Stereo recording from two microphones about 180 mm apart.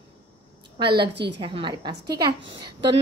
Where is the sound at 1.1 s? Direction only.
70° right (ahead or behind).